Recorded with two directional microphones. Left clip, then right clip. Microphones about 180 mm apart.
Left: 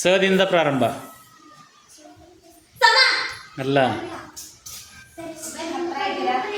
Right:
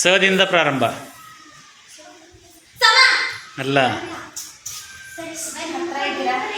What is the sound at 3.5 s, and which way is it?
Speech, 10° left (ahead or behind).